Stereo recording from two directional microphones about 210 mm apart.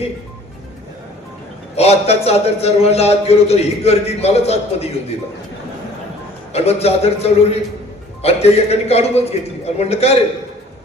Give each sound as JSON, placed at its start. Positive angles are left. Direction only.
{"t": 1.7, "sound": "a man's voice", "side_deg": 30}
{"t": 6.5, "sound": "a man's voice", "side_deg": 30}